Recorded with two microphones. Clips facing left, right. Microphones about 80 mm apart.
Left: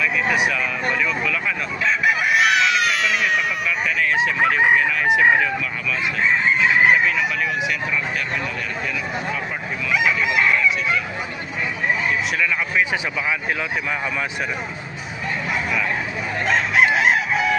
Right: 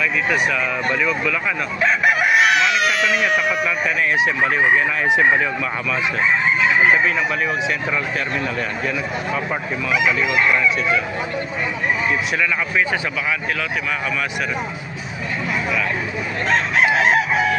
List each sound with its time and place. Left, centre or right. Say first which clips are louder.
1.8 s chicken: right 2 dB; right
2.3 s a sound: right 2 dB; centre
4.2 s speech: left 1 dB; right